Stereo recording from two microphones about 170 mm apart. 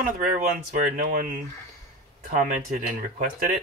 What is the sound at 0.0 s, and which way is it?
Speech, 55° right (ahead or behind).